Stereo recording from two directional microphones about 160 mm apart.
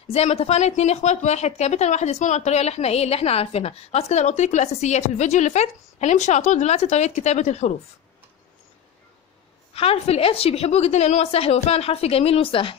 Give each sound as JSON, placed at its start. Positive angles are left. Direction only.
{"t": 0.1, "sound": "a woman's voice", "side_deg": 40}
{"t": 9.8, "sound": "a woman's voice", "side_deg": 40}